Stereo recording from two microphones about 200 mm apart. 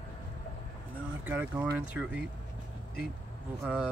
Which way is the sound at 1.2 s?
10° right (ahead or behind).